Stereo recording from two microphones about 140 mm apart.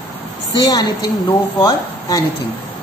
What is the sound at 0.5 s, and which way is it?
A woman's voice, 30° left (ahead or behind).